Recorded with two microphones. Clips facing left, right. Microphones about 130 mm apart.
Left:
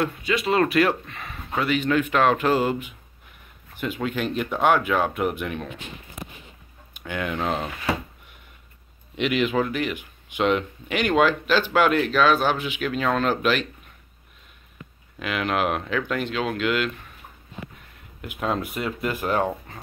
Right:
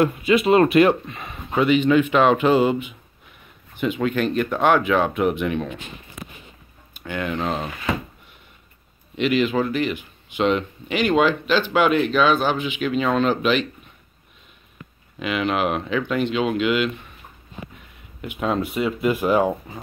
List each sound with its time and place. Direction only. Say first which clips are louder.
0.7 s speech: right 5 dB; 25° right (ahead or behind); by 5.8 s centre (ahead or behind)
7.0 s speech: right 2 dB; 5° left (ahead or behind)
9.1 s speech: right 3 dB; 10° left (ahead or behind)
11.7 s speech: right 2 dB; 5° right (ahead or behind)
15.1 s speech: right 2 dB; centre (ahead or behind)
18.2 s speech: right 3 dB; centre (ahead or behind)